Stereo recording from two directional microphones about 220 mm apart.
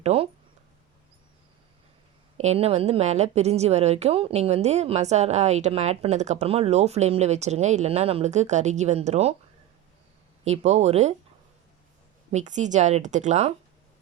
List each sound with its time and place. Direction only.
0.0 s a sound: 25° right (ahead or behind)
2.4 s a woman's voice: 30° right (ahead or behind)
10.4 s a woman's voice: 30° right (ahead or behind)
12.3 s speech: 35° right (ahead or behind)